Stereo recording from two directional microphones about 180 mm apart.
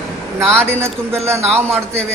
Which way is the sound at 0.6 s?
15° right (ahead or behind).